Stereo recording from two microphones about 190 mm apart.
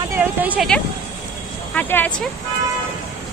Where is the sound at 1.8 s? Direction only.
10° left (ahead or behind).